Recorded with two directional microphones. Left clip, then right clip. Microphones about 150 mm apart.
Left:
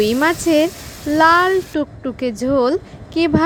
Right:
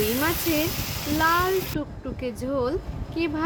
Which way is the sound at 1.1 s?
50° left (ahead or behind).